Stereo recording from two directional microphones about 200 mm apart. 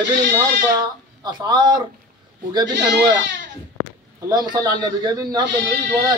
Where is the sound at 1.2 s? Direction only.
20° right (ahead or behind).